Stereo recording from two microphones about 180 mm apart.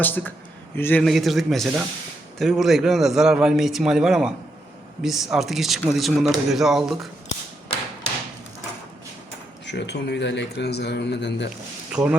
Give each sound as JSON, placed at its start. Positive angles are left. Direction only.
{"t": 0.0, "sound": "a man's voice", "side_deg": 10}
{"t": 1.0, "sound": "speech", "side_deg": 0}
{"t": 9.6, "sound": "speech", "side_deg": 70}
{"t": 11.9, "sound": "speech", "side_deg": -5}